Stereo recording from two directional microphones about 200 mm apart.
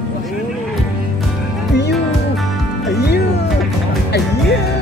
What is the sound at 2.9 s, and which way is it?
Music, 55° left (ahead or behind).